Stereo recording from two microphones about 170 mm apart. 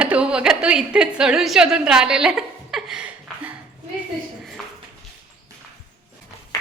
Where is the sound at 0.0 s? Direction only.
5° right (ahead or behind).